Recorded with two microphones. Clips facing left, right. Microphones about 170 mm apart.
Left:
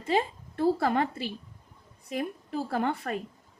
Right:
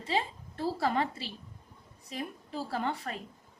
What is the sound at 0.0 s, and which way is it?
A woman's voice, 50° left (ahead or behind).